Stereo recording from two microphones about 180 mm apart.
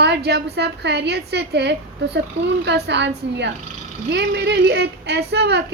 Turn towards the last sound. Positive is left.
turn(degrees=-70)  # may be behind; listen again after turning